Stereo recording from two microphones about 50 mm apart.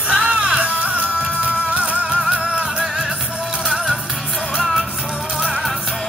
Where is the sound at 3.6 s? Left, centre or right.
Centre.